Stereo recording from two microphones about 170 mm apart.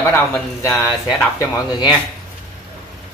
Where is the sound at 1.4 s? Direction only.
25° left (ahead or behind).